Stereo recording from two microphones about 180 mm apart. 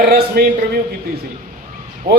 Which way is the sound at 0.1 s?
60° right (ahead or behind).